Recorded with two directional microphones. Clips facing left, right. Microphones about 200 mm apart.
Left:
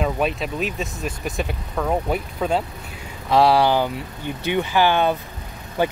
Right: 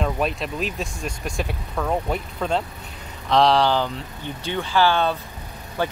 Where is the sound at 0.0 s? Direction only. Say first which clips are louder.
Left 2 dB; centre (ahead or behind).